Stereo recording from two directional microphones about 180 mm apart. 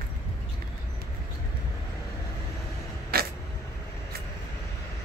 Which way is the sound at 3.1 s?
60° right (ahead or behind).